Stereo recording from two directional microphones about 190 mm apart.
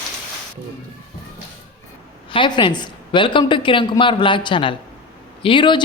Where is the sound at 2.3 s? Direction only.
25° left (ahead or behind).